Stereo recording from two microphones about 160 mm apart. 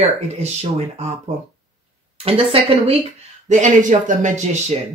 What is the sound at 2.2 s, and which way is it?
Speech, 35° right (ahead or behind).